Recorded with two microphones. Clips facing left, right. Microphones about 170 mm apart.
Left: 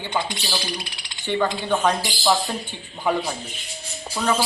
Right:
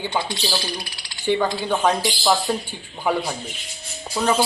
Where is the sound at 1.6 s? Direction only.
10° right (ahead or behind).